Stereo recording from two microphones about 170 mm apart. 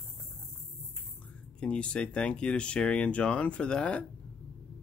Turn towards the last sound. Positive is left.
turn(degrees=5)  # may be behind; listen again after turning